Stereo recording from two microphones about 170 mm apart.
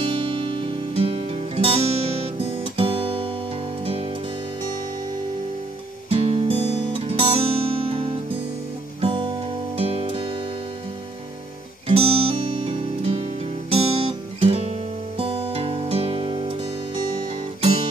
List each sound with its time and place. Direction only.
0.0 s music: 30° right (ahead or behind)
6.0 s guitar: 35° right (ahead or behind)
9.0 s music: 30° right (ahead or behind)
11.9 s music: 35° right (ahead or behind)